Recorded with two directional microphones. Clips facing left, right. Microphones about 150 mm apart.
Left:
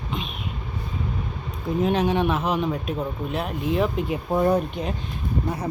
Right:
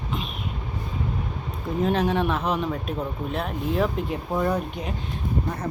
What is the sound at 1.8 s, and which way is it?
Speech, centre (ahead or behind).